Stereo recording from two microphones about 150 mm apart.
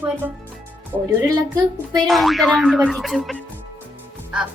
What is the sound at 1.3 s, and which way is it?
Speech, 25° right (ahead or behind).